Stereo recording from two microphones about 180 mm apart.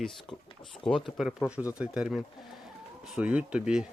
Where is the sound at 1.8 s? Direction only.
5° right (ahead or behind).